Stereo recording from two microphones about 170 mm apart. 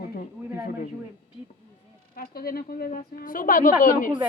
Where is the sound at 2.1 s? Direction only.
60° left (ahead or behind).